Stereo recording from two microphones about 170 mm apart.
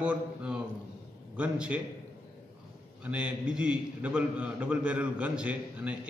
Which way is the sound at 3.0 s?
5° right (ahead or behind).